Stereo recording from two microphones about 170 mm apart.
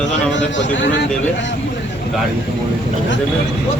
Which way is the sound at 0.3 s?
90° left.